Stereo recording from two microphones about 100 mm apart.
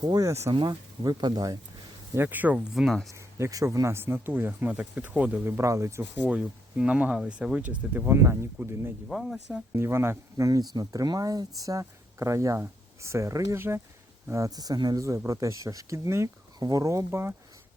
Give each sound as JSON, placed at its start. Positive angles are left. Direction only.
{"t": 0.0, "sound": "speech", "side_deg": -40}
{"t": 0.5, "sound": "speech", "side_deg": -40}
{"t": 2.1, "sound": "speech", "side_deg": -20}
{"t": 2.7, "sound": "speech", "side_deg": 0}
{"t": 3.1, "sound": "speech", "side_deg": -30}
{"t": 6.2, "sound": "speech", "side_deg": -10}
{"t": 8.0, "sound": "speech", "side_deg": -25}
{"t": 9.0, "sound": "speech", "side_deg": 0}
{"t": 9.7, "sound": "speech", "side_deg": -25}